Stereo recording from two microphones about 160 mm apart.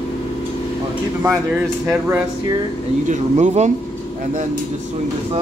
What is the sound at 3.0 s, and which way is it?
Speech, 50° right (ahead or behind).